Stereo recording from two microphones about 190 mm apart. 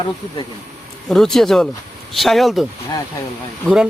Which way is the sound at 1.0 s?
5° left (ahead or behind).